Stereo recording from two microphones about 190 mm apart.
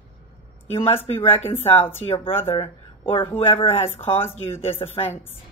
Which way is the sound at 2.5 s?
30° left (ahead or behind).